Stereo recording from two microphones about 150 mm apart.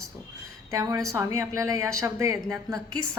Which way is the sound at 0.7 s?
25° right (ahead or behind).